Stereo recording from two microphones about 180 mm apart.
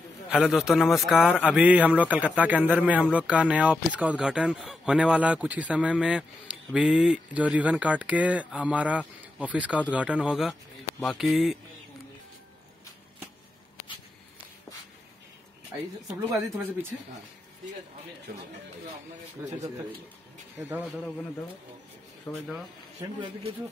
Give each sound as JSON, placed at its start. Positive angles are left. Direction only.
{"t": 0.4, "sound": "a man's voice", "side_deg": 0}
{"t": 16.3, "sound": "a man's voice", "side_deg": -15}
{"t": 20.5, "sound": "speech", "side_deg": -20}
{"t": 20.9, "sound": "speech", "side_deg": 5}
{"t": 22.5, "sound": "speech", "side_deg": -5}